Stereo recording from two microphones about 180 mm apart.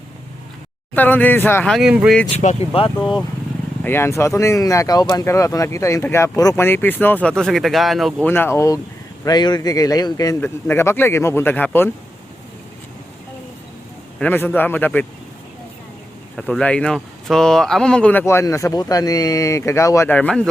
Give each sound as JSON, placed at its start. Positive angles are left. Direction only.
{"t": 0.9, "sound": "speech", "side_deg": 10}
{"t": 2.4, "sound": "speech", "side_deg": 40}
{"t": 3.8, "sound": "speech", "side_deg": 15}
{"t": 8.3, "sound": "speech", "side_deg": 15}
{"t": 14.2, "sound": "speech", "side_deg": 10}
{"t": 16.4, "sound": "speech", "side_deg": 5}